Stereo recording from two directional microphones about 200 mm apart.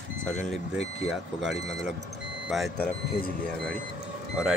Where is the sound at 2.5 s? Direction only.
Centre (ahead or behind).